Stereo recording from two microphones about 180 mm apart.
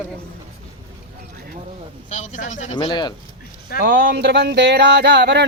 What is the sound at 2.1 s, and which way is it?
Speech, 40° left (ahead or behind).